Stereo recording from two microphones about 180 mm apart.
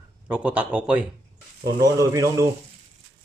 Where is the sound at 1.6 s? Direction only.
20° right (ahead or behind).